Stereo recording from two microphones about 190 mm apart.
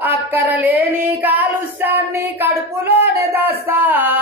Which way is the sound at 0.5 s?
10° right (ahead or behind).